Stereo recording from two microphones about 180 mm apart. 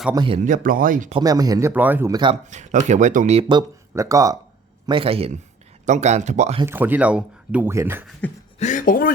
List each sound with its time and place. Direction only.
0.1 s speech: 25° right (ahead or behind)
0.3 s speech: 45° right (ahead or behind)
1.2 s speech: 20° right (ahead or behind)
2.5 s speech: 40° right (ahead or behind)
3.5 s speech: 15° right (ahead or behind)
4.9 s speech: 30° right (ahead or behind)
6.7 s speech: 10° right (ahead or behind)
8.2 s beatboxing: 10° left (ahead or behind)
8.5 s speech: 45° left (ahead or behind)